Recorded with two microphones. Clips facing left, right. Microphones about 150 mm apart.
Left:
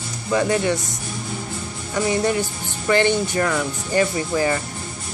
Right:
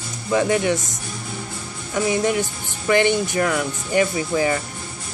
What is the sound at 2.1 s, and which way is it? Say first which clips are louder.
Speech: even; 15° right (ahead or behind).